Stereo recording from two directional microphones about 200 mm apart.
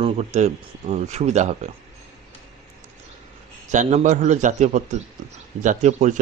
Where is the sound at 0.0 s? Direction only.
35° right (ahead or behind).